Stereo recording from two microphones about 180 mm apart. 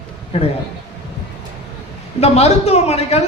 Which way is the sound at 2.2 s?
35° left (ahead or behind).